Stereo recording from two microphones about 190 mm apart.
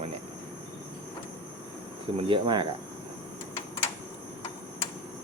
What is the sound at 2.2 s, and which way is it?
Speech, 25° right (ahead or behind).